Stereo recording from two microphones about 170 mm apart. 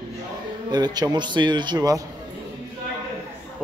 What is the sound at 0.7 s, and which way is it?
Speech, 25° right (ahead or behind).